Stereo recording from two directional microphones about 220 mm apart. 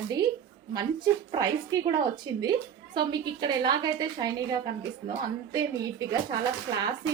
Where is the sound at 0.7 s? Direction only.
20° right (ahead or behind).